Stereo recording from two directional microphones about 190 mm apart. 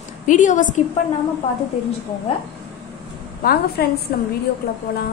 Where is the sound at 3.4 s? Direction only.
55° left (ahead or behind).